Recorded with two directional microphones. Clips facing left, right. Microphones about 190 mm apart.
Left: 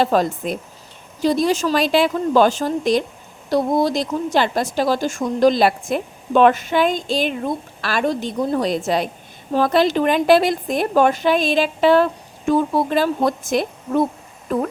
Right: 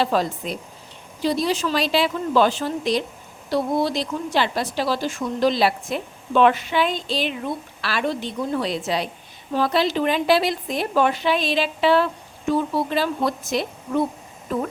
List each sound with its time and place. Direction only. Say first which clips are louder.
0.0 s a woman's voice: left 4 dB; 50° left (ahead or behind)